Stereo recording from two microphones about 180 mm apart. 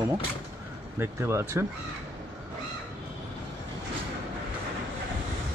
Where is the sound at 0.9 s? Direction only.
15° right (ahead or behind).